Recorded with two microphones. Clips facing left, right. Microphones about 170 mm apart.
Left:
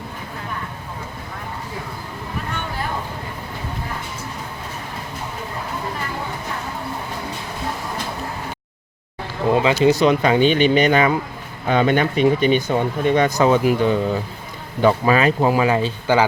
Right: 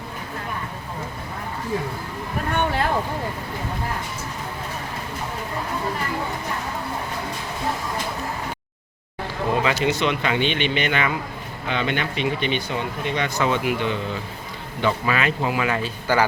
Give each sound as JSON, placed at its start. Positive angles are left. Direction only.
{"t": 9.5, "sound": "speech", "side_deg": 30}